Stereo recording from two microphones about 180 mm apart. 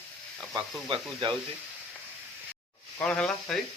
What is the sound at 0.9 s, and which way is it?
Speech, 25° right (ahead or behind).